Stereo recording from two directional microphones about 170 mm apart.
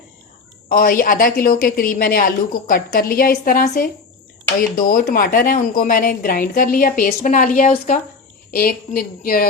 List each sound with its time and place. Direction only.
0.7 s a woman's voice: 55° left (ahead or behind)
8.4 s a woman's voice: 65° left (ahead or behind)